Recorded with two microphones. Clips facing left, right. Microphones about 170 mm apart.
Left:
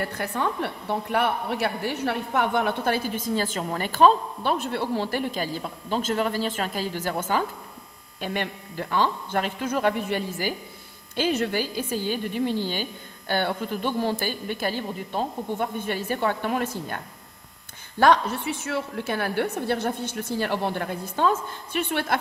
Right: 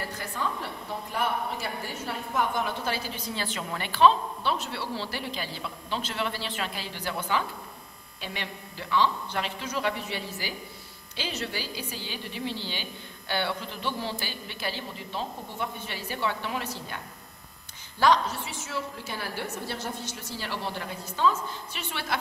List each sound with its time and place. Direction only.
0.0 s a woman's voice: 60° left (ahead or behind)